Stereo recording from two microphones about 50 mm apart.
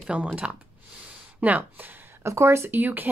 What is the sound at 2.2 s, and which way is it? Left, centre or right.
Speech, right.